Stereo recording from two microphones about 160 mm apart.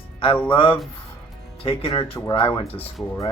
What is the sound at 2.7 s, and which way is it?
Speech, 10° left (ahead or behind).